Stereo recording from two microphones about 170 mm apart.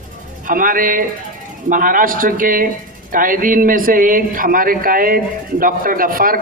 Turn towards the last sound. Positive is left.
turn(degrees=-55)  # may be behind; listen again after turning